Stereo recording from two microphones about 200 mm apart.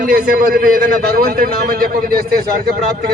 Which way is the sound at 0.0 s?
45° right (ahead or behind).